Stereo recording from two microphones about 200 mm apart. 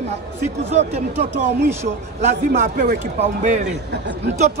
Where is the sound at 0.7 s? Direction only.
35° right (ahead or behind).